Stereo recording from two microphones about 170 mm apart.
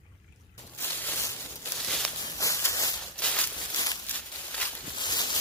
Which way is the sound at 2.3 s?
20° left (ahead or behind).